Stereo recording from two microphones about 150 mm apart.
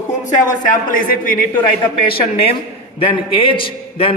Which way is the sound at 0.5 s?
65° left (ahead or behind).